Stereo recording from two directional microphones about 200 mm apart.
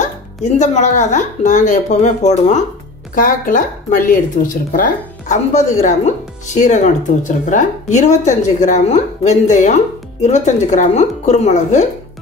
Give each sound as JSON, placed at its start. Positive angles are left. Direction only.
{"t": 0.0, "sound": "speech", "side_deg": 35}